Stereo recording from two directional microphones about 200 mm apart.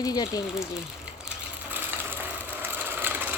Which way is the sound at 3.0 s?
10° right (ahead or behind).